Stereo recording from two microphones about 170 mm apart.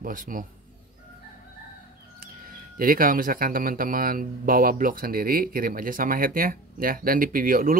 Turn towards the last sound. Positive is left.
turn(degrees=-55)  # may be behind; listen again after turning